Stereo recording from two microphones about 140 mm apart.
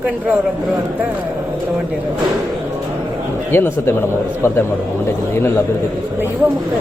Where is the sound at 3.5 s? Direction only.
15° left (ahead or behind).